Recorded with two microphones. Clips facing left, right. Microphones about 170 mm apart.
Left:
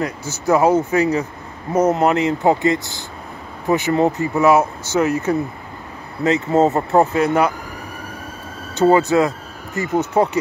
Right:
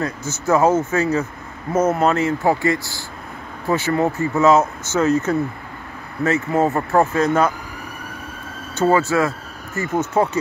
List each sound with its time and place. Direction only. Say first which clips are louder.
0.0 s speech: left 1 dB; 15° left (ahead or behind)
8.7 s speech: left 3 dB; 20° left (ahead or behind)